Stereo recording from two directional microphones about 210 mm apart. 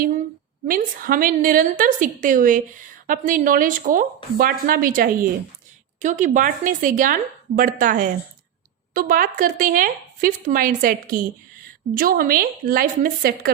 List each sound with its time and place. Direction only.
0.7 s a woman's voice: 40° right (ahead or behind)